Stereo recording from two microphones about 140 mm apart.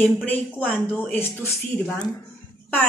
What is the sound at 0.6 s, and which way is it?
Speech, 10° left (ahead or behind).